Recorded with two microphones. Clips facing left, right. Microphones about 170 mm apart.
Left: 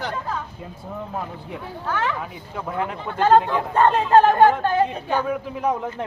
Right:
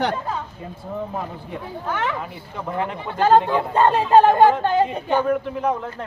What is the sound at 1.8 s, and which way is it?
Speech, 15° right (ahead or behind).